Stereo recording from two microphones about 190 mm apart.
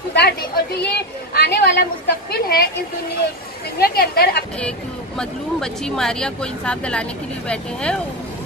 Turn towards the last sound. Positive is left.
turn(degrees=5)  # may be behind; listen again after turning